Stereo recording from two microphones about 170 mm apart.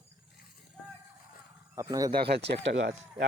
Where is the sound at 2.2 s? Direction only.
80° right.